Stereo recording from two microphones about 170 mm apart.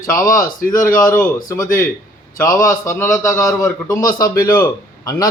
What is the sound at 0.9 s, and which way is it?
Speech, 20° left (ahead or behind).